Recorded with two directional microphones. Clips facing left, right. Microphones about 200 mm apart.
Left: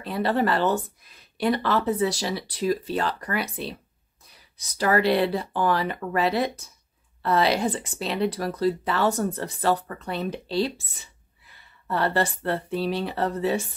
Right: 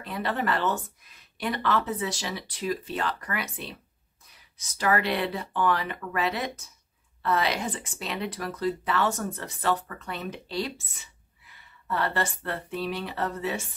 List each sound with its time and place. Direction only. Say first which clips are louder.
0.0 s speech: left 6 dB; 35° left (ahead or behind)
11.9 s speech: left 4 dB; 35° left (ahead or behind)